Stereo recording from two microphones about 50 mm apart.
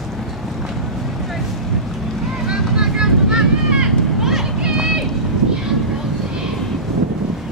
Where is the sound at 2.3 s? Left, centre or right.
Centre.